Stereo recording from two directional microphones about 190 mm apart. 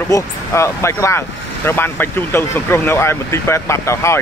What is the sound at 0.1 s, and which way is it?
Speech, 15° left (ahead or behind).